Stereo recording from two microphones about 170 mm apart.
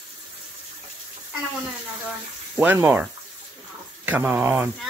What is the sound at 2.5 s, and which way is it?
Speech, 10° right (ahead or behind).